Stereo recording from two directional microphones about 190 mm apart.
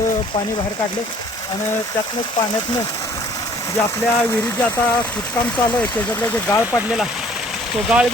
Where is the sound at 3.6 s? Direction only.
15° left (ahead or behind).